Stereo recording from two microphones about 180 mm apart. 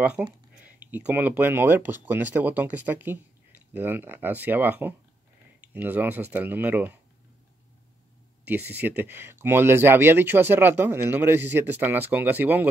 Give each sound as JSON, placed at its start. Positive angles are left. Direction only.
{"t": 0.0, "sound": "speech", "side_deg": -5}
{"t": 8.5, "sound": "speech", "side_deg": -10}